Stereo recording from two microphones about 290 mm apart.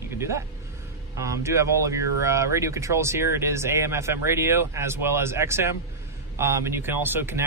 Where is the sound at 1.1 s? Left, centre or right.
Centre.